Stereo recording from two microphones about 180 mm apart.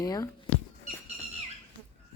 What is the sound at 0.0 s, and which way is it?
Speech, 20° left (ahead or behind).